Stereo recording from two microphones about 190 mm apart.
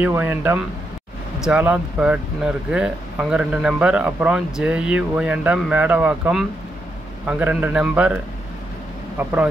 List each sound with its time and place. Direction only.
0.0 s speech: 10° right (ahead or behind)